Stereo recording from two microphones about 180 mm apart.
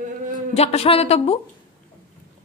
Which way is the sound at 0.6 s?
35° left (ahead or behind).